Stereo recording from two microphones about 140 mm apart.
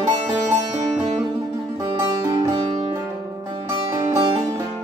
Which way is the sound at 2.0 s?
30° right (ahead or behind).